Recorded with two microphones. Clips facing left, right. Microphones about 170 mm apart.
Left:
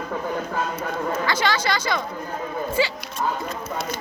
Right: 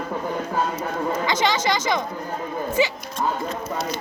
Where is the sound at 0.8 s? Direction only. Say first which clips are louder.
Right 1 dB; 20° right (ahead or behind).